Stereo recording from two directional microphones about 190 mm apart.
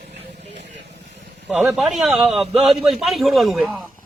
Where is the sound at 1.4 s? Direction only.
5° right (ahead or behind).